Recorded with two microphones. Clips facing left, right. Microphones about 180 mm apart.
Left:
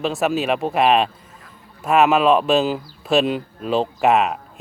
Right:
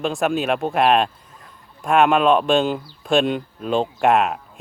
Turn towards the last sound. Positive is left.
turn(degrees=0)  # may be behind; listen again after turning